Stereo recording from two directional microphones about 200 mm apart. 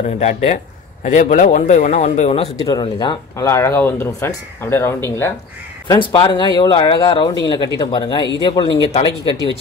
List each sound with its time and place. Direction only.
0.2 s speech: 35° left (ahead or behind); by 4.9 s 10° left (ahead or behind)
5.9 s speech: 25° left (ahead or behind)